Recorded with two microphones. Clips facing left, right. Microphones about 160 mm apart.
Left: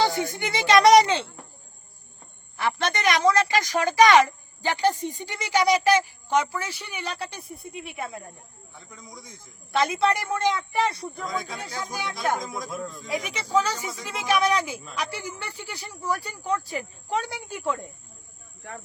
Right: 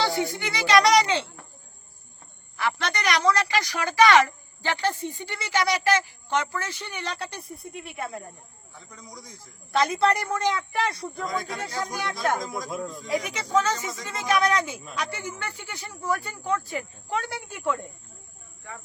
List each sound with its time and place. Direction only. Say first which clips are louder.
0.1 s a child's voice: right 1 dB; 20° right (ahead or behind)
0.3 s speech: left 2 dB; 20° left (ahead or behind)
1.0 s speech: left 1 dB; 55° left (ahead or behind)
2.6 s speech: left 2 dB; 20° left (ahead or behind)
3.3 s speech: left 3 dB; 45° left (ahead or behind)
3.8 s a woman's voice: left 1 dB; 20° left (ahead or behind)